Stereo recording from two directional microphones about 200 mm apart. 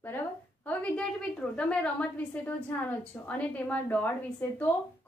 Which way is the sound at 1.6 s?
5° left (ahead or behind).